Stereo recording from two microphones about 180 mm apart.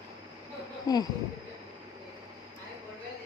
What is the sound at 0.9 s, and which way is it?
Speech, 20° left (ahead or behind).